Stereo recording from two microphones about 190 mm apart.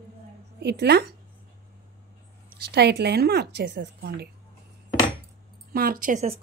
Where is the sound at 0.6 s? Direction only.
60° right (ahead or behind).